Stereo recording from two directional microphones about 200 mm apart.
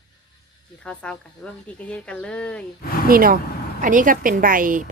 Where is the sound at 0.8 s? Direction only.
5° left (ahead or behind).